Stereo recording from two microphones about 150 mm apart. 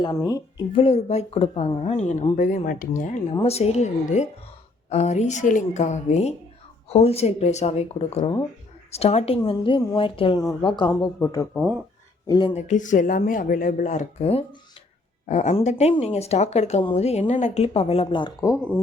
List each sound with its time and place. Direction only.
0.3 s a woman's voice: 25° left (ahead or behind)
0.8 s speech: 40° left (ahead or behind)
2.3 s speech: 60° left (ahead or behind)
3.4 s a woman's voice: 45° left (ahead or behind)
11.2 s a woman's voice: 20° left (ahead or behind)
12.3 s a woman's voice: 30° left (ahead or behind)
12.5 s speech: 55° left (ahead or behind); by 18.5 s 30° left (ahead or behind)